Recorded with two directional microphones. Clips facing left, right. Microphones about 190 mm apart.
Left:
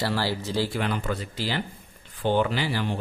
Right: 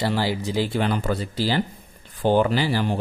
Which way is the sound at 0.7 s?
35° right (ahead or behind).